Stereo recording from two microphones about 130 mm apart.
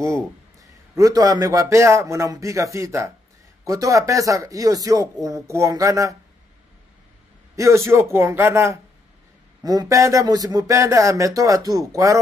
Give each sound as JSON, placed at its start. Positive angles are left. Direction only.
{"t": 0.0, "sound": "a man's voice", "side_deg": -25}
{"t": 7.5, "sound": "a man's voice", "side_deg": -25}